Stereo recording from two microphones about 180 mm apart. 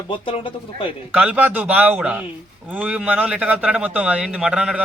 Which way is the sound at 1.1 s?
10° right (ahead or behind).